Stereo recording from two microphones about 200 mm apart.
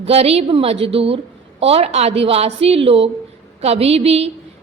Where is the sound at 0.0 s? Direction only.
30° right (ahead or behind).